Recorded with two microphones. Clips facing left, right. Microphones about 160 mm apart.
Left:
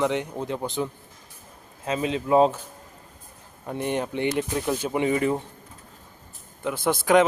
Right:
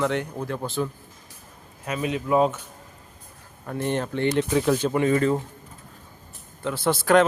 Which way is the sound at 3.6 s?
15° left (ahead or behind).